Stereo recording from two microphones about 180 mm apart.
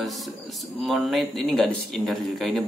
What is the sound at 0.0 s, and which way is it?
Speech, centre (ahead or behind).